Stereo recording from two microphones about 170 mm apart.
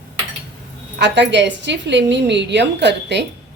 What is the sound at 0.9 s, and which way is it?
A woman's voice, 85° right.